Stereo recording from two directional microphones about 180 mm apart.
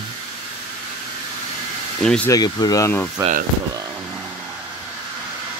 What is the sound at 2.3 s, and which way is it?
Speech, 20° left (ahead or behind).